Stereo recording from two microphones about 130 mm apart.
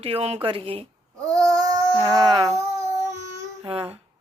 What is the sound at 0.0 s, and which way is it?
Speech, 50° right (ahead or behind).